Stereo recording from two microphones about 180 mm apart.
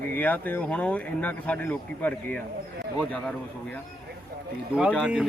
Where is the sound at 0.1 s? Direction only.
10° left (ahead or behind).